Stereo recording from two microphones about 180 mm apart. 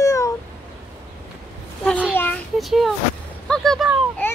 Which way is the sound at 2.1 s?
10° left (ahead or behind).